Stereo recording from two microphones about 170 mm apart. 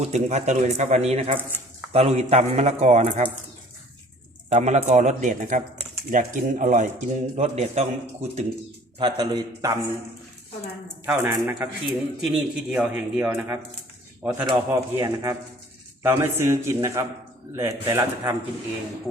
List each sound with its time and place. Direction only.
0.0 s speech: 40° right (ahead or behind)
4.4 s a man's voice: 40° right (ahead or behind)
9.0 s a man's voice: 25° right (ahead or behind)
11.0 s speech: 15° right (ahead or behind)